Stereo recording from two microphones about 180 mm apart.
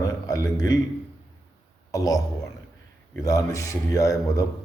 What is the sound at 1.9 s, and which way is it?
A man's voice, 20° left (ahead or behind).